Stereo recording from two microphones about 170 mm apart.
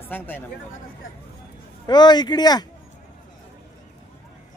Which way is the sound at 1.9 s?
25° left (ahead or behind).